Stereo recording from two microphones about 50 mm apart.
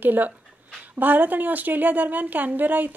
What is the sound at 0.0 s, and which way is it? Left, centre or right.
A woman's voice, right.